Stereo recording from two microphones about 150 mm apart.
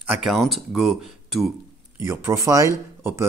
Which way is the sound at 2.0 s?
20° right (ahead or behind).